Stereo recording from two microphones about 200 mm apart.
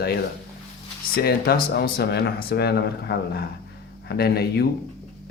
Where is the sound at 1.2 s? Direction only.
50° left (ahead or behind).